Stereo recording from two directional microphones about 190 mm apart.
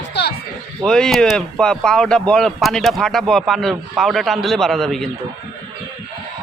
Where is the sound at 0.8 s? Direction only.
Centre (ahead or behind).